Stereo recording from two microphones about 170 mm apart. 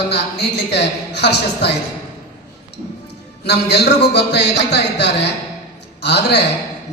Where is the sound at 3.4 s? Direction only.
75° left (ahead or behind).